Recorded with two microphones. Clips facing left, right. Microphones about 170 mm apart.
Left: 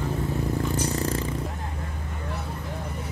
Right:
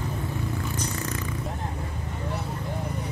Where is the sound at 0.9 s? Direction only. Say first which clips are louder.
Left 5 dB; 30° left (ahead or behind).